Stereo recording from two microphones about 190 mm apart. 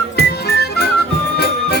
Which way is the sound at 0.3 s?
55° left (ahead or behind).